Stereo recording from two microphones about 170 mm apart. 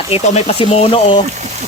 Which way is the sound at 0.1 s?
35° left (ahead or behind).